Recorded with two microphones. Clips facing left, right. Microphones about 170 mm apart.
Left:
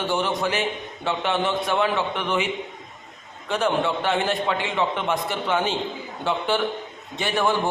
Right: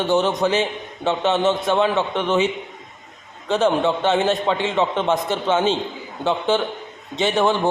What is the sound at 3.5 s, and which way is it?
A man's voice, 25° right (ahead or behind).